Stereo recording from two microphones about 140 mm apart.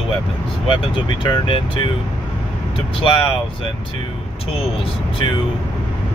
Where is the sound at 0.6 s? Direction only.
35° left (ahead or behind).